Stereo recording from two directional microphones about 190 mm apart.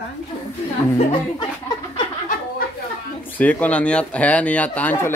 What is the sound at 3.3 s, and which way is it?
Speech, 10° left (ahead or behind).